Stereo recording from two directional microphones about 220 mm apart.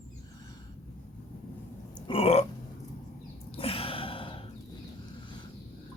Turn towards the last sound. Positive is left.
turn(degrees=25)  # may be behind; listen again after turning